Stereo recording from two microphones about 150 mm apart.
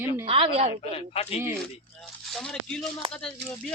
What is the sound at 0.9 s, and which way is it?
Speech, 40° left (ahead or behind).